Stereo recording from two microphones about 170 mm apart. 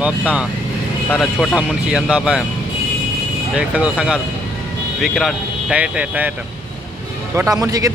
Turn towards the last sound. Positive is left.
turn(degrees=-20)  # may be behind; listen again after turning